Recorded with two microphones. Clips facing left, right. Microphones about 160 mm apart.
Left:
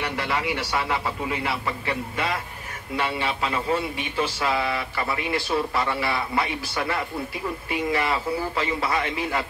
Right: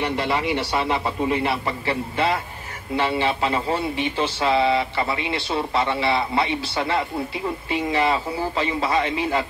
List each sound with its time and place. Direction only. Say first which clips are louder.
0.0 s speech: right 4 dB; 25° right (ahead or behind)